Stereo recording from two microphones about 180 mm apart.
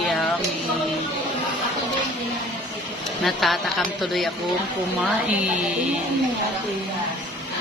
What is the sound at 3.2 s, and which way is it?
Speech, centre (ahead or behind).